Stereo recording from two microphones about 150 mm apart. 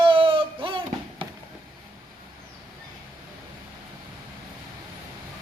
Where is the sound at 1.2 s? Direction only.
35° right (ahead or behind).